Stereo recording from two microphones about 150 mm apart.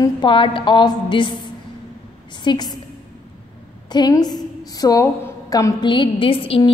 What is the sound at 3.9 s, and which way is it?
A woman's voice, 25° left (ahead or behind).